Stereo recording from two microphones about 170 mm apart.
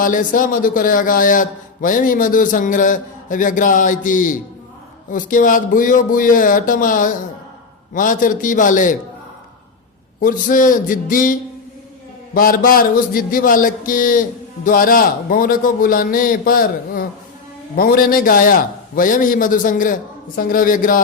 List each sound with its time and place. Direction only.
0.0 s a man's voice: 50° left (ahead or behind)
10.2 s a man's voice: 50° left (ahead or behind)
12.3 s a sound: 60° left (ahead or behind)
17.7 s a man's voice: 60° left (ahead or behind)